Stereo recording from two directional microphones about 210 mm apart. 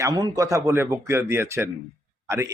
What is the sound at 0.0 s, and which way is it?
Speech, 15° right (ahead or behind).